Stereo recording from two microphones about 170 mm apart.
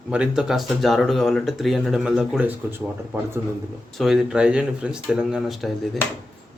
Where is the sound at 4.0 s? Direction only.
Centre (ahead or behind).